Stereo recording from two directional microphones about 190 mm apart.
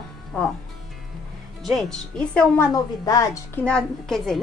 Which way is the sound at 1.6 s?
Centre (ahead or behind).